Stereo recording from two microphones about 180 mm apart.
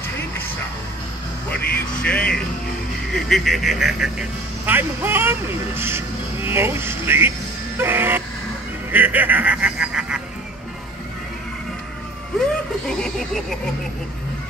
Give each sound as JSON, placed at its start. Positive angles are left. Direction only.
{"t": 2.0, "sound": "speech", "side_deg": 5}
{"t": 12.8, "sound": "snicker", "side_deg": 5}